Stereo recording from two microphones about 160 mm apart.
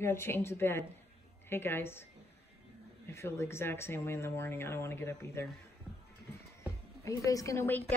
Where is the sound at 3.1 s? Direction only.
15° left (ahead or behind).